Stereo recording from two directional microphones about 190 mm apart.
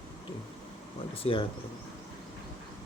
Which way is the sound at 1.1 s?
30° left (ahead or behind).